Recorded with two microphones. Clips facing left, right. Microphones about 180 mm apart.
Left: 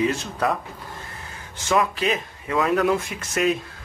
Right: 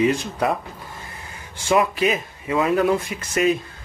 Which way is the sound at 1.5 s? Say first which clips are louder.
Right 3 dB; 10° right (ahead or behind).